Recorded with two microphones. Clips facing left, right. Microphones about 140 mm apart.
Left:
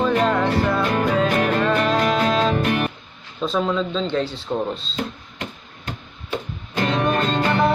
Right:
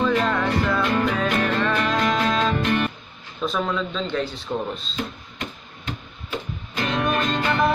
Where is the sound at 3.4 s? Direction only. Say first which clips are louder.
Left 3 dB; 25° left (ahead or behind).